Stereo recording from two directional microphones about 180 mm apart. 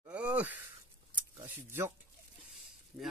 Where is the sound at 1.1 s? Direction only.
10° right (ahead or behind).